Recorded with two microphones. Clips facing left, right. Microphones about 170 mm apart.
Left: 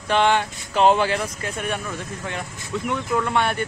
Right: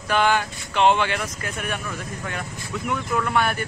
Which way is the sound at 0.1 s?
25° left (ahead or behind).